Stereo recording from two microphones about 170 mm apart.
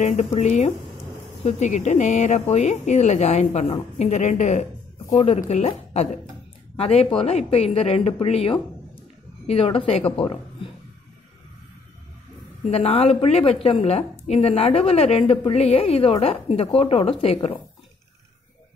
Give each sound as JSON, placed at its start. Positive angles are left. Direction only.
{"t": 0.0, "sound": "a woman's voice", "side_deg": 45}
{"t": 4.1, "sound": "a woman's voice", "side_deg": 45}
{"t": 12.6, "sound": "a woman's voice", "side_deg": 35}